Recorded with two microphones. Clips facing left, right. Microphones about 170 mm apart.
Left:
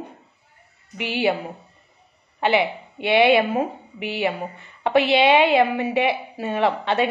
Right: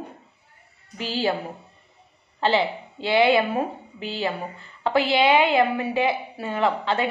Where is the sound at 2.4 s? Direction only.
15° left (ahead or behind).